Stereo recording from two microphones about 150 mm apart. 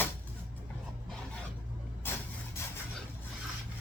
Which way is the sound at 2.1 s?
15° left (ahead or behind).